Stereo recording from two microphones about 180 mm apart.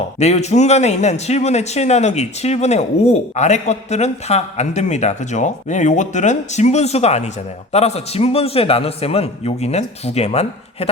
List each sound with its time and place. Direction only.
0.2 s a man's voice: 40° left (ahead or behind)